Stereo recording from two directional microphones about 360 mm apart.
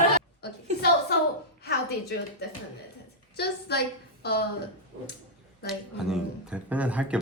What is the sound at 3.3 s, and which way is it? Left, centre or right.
A woman's voice, left.